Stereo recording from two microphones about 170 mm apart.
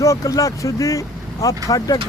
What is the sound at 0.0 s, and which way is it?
Speech, 20° left (ahead or behind).